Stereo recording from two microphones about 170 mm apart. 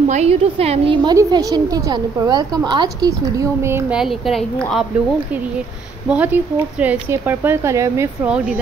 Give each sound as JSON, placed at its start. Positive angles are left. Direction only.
{"t": 0.1, "sound": "a woman's voice", "side_deg": -40}
{"t": 1.1, "sound": "a woman's voice", "side_deg": -20}
{"t": 4.0, "sound": "a woman's voice", "side_deg": 0}
{"t": 6.0, "sound": "speech", "side_deg": -10}